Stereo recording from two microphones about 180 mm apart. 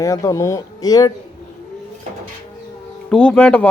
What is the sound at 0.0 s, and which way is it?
Speech, 15° left (ahead or behind).